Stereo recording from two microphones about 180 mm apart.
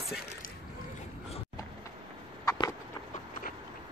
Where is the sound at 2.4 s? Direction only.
25° left (ahead or behind).